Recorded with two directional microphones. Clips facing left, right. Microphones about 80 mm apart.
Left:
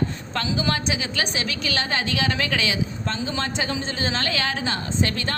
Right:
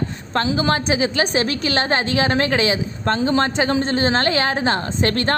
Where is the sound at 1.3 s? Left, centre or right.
Right.